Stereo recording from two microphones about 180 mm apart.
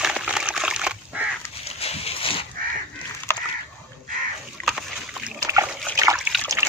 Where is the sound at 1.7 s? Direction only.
35° left (ahead or behind).